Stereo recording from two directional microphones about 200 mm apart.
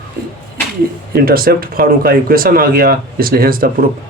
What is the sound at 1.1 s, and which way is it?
Speech, 50° right (ahead or behind).